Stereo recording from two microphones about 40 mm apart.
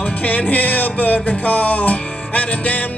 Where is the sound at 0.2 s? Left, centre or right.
Left.